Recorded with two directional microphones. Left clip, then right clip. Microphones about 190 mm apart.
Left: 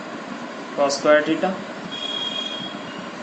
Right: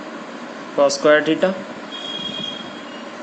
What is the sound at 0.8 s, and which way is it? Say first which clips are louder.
Speech: right 3 dB; 60° right (ahead or behind).